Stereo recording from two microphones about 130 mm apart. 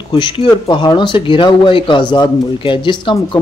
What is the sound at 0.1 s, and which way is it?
Speech, 40° left (ahead or behind).